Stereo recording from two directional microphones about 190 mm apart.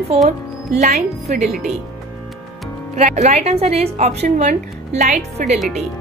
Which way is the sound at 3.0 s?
35° right (ahead or behind).